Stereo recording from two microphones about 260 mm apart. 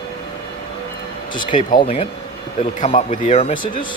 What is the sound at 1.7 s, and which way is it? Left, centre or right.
Speech, left.